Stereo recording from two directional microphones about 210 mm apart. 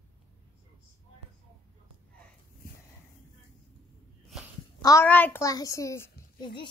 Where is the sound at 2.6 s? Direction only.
45° left (ahead or behind).